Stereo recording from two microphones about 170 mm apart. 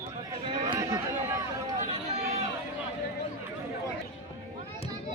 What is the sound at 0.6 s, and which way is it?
Run, 20° right (ahead or behind).